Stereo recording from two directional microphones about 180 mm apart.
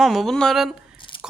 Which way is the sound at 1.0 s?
25° left (ahead or behind).